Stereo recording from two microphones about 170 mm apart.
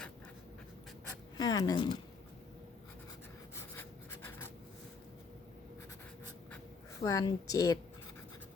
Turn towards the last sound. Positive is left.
turn(degrees=20)  # may be behind; listen again after turning